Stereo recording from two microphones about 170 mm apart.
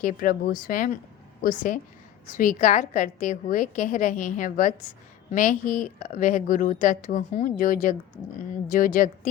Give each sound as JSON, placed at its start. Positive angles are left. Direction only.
{"t": 0.0, "sound": "a woman's voice", "side_deg": 55}